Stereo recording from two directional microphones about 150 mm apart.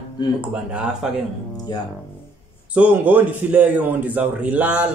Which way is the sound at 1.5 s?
25° left (ahead or behind).